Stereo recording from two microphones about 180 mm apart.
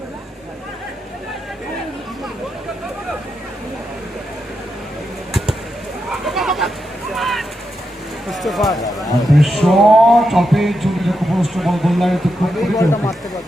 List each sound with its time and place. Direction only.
6.2 s a sound: centre (ahead or behind)
8.3 s a man's voice: centre (ahead or behind)
12.7 s speech: 15° left (ahead or behind)